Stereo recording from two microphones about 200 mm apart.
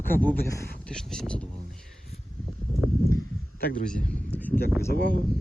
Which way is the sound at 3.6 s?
50° left (ahead or behind).